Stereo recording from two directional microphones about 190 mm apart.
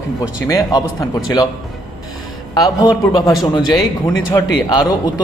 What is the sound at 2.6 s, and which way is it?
A man's voice, 20° left (ahead or behind).